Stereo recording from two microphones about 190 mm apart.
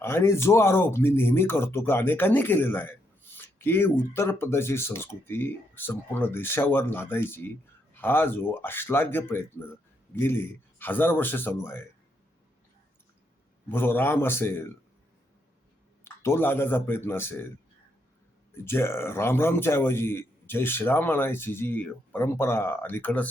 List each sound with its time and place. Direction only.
0.0 s a man's voice: 15° left (ahead or behind)
13.7 s a man's voice: 10° left (ahead or behind)
16.0 s a man's voice: 10° left (ahead or behind)
18.5 s a man's voice: 10° left (ahead or behind)